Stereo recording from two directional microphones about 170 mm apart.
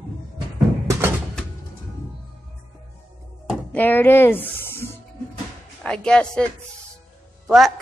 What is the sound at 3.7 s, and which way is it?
Speech, 10° left (ahead or behind).